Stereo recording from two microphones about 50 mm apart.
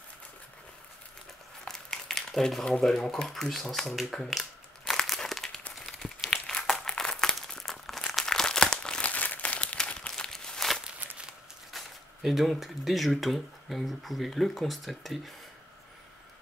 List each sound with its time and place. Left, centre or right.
1.6 s crumpling: centre
2.6 s speech: centre
4.3 s a sound: centre
4.9 s crumpling: centre
9.0 s crumpling: left
10.1 s walk: centre
11.7 s a sound: centre
12.5 s speech: centre